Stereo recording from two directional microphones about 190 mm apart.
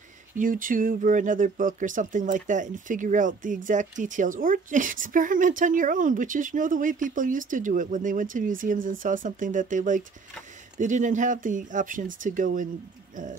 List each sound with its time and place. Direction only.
0.4 s speech: 45° right (ahead or behind)
13.1 s owl: 45° right (ahead or behind)